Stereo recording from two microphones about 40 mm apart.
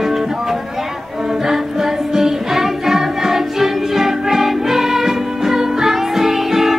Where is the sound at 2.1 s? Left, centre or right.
Centre.